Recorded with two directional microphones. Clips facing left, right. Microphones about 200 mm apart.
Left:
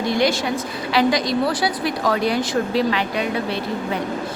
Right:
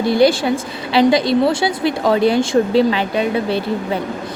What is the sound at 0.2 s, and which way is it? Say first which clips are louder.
A woman's voice: right 6 dB; 30° right (ahead or behind).